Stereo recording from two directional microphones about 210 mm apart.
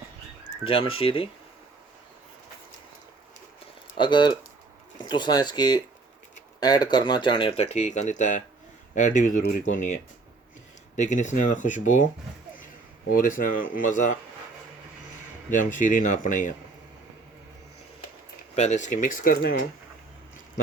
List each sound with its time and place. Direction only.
0.6 s speech: 25° left (ahead or behind)
3.9 s speech: 20° left (ahead or behind); by 9.9 s 40° left (ahead or behind)
10.9 s speech: 35° left (ahead or behind)
13.1 s speech: 40° left (ahead or behind)
15.5 s speech: 40° left (ahead or behind)
18.5 s speech: 35° left (ahead or behind)